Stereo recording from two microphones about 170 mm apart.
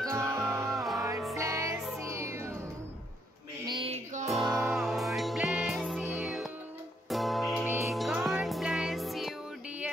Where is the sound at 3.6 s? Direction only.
25° right (ahead or behind).